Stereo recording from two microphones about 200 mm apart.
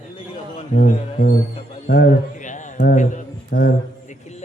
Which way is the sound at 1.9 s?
50° left (ahead or behind).